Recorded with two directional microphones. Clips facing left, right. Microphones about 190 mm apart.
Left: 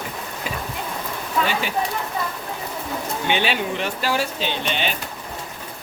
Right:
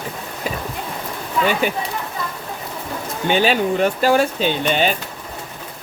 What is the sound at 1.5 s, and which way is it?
Speech, 50° right (ahead or behind).